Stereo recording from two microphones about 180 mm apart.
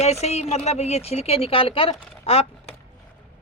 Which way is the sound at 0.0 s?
35° left (ahead or behind).